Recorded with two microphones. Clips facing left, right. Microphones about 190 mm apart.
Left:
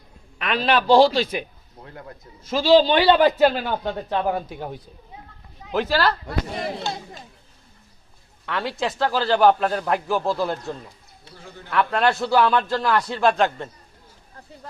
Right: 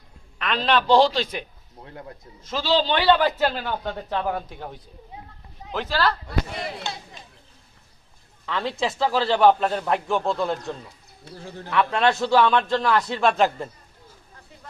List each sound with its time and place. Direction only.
0.3 s a man's voice: 10° left (ahead or behind)
1.8 s speech: 25° right (ahead or behind)
2.4 s a man's voice: 10° left (ahead or behind)
6.2 s speech: 45° left (ahead or behind)
8.4 s speech: 5° left (ahead or behind)
11.4 s a man's voice: 30° right (ahead or behind)
11.7 s speech: centre (ahead or behind)